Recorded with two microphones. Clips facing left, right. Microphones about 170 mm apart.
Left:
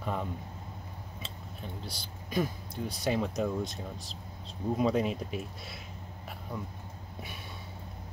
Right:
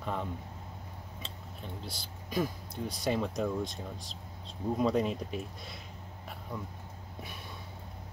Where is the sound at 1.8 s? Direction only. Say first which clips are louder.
Left 1 dB; centre (ahead or behind).